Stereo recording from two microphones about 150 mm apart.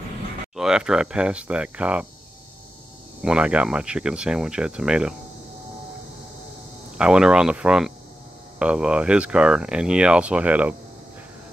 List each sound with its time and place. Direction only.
0.6 s speech: 5° right (ahead or behind)
3.2 s speech: 5° right (ahead or behind)
7.0 s speech: 5° right (ahead or behind)